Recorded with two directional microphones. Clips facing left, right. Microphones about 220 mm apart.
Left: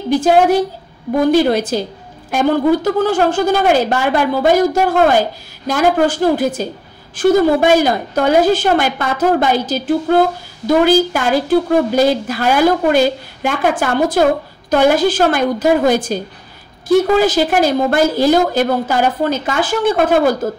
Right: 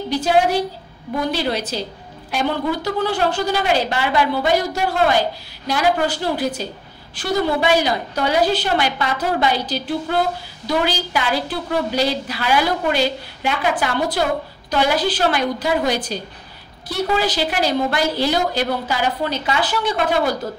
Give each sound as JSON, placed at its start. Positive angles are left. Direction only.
{"t": 0.1, "sound": "a woman's voice", "side_deg": 50}